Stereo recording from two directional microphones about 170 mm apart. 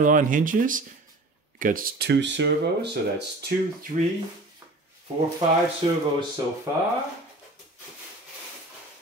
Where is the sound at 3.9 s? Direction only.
50° right (ahead or behind).